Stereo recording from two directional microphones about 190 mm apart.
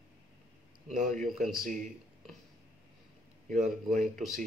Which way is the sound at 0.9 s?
45° right (ahead or behind).